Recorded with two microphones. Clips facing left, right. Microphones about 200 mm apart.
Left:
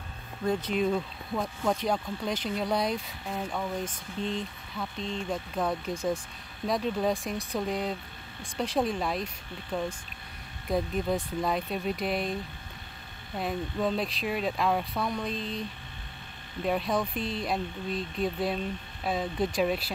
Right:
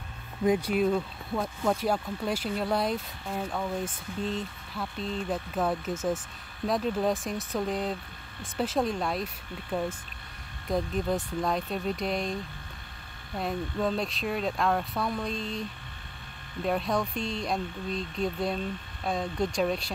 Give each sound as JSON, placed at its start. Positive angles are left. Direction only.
{"t": 0.5, "sound": "speech", "side_deg": -10}
{"t": 13.4, "sound": "speech", "side_deg": 0}
{"t": 16.6, "sound": "speech", "side_deg": 0}